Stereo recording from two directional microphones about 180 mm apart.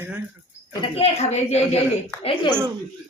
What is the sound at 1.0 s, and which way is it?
Speech, 35° left (ahead or behind).